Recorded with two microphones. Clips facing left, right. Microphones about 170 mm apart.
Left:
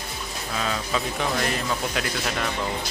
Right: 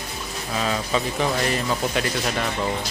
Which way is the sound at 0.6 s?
Centre (ahead or behind).